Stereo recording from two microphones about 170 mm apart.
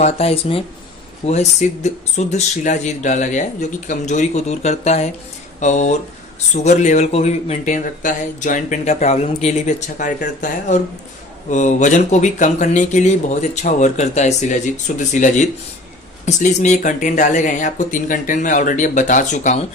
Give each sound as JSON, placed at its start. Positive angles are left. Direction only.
{"t": 0.0, "sound": "speech", "side_deg": 35}
{"t": 11.5, "sound": "speech", "side_deg": 45}